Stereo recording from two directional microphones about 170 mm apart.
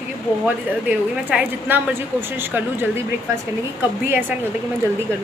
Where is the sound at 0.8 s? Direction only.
10° right (ahead or behind).